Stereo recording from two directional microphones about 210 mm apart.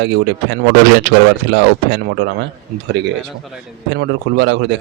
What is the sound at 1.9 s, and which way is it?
Speech, 55° right (ahead or behind).